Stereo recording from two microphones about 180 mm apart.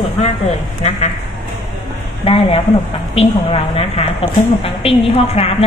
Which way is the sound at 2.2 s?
30° left (ahead or behind).